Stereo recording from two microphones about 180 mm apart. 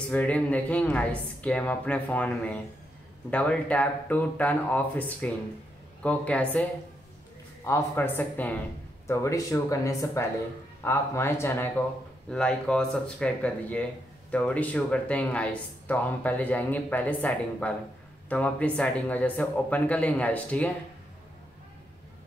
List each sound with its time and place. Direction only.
0.1 s speech: 10° left (ahead or behind)
7.6 s speech: 15° left (ahead or behind)